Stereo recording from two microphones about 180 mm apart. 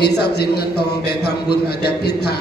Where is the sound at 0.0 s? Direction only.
65° left (ahead or behind).